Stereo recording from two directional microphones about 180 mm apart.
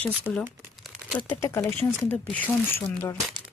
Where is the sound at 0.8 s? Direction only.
Centre (ahead or behind).